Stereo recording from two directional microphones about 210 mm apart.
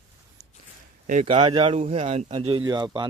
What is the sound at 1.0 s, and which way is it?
Speech, 35° right (ahead or behind).